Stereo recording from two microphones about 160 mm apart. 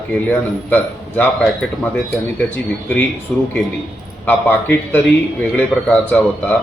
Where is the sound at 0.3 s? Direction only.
10° left (ahead or behind).